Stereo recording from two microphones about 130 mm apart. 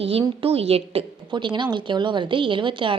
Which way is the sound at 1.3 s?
40° right (ahead or behind).